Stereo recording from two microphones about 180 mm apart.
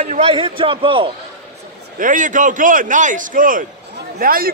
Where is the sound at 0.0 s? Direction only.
35° right (ahead or behind).